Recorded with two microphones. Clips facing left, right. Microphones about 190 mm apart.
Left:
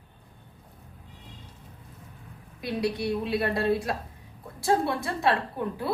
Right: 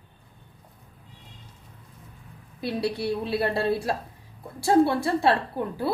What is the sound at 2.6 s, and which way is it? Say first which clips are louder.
A woman's voice: right 1 dB; 30° right (ahead or behind).